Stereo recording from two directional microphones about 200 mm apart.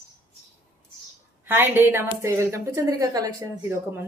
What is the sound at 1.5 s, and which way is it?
A woman's voice, 10° right (ahead or behind).